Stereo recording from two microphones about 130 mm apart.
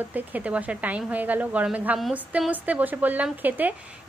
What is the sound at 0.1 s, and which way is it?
A woman's voice, 10° right (ahead or behind).